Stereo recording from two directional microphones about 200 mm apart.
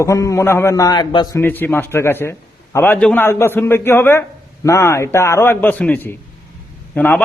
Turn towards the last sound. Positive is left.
turn(degrees=5)  # may be behind; listen again after turning